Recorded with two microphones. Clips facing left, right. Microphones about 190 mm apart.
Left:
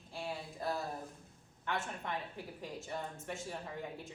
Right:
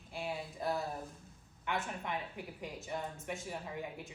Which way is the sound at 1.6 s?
15° right (ahead or behind).